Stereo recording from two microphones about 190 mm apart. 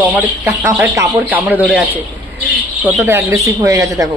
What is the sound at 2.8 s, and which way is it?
Speech, 10° right (ahead or behind).